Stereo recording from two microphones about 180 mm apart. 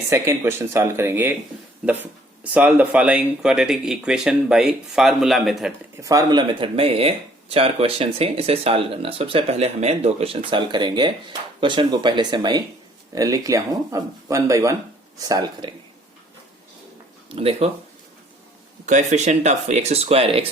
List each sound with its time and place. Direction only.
0.1 s speech: 15° right (ahead or behind); by 5.7 s centre (ahead or behind)
6.0 s speech: 20° right (ahead or behind)
17.2 s speech: 35° right (ahead or behind)
18.9 s speech: 40° right (ahead or behind)